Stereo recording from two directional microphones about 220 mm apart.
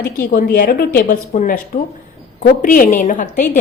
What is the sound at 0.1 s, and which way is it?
Speech, 40° left (ahead or behind).